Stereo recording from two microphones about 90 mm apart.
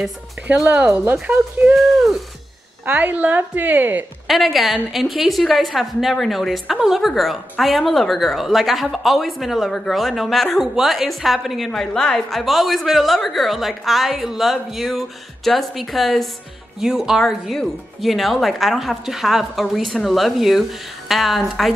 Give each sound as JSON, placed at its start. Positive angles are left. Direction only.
{"t": 0.6, "sound": "speech", "side_deg": -15}
{"t": 1.8, "sound": "a woman's voice", "side_deg": 0}
{"t": 2.8, "sound": "speech", "side_deg": -20}
{"t": 4.3, "sound": "a woman's voice", "side_deg": 0}